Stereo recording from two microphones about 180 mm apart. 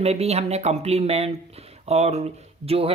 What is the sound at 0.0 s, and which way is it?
Speech, 35° right (ahead or behind).